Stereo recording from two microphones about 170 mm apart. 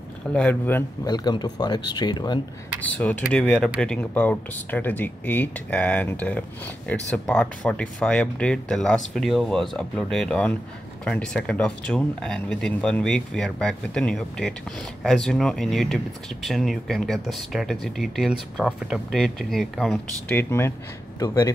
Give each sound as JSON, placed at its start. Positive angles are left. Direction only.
{"t": 0.3, "sound": "speech", "side_deg": 10}
{"t": 1.0, "sound": "speech", "side_deg": 25}
{"t": 3.0, "sound": "speech", "side_deg": 5}
{"t": 20.3, "sound": "speech", "side_deg": 15}